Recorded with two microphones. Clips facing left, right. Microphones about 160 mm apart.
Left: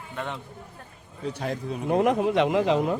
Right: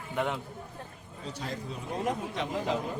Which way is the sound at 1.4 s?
65° left (ahead or behind).